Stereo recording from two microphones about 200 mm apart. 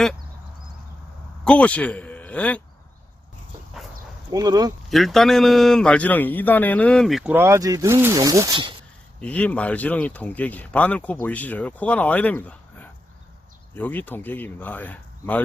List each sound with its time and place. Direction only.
1.5 s a man's voice: 5° left (ahead or behind)
4.3 s speech: 20° right (ahead or behind)
4.9 s a man's voice: centre (ahead or behind); by 8.7 s 20° right (ahead or behind)
9.2 s speech: 5° left (ahead or behind)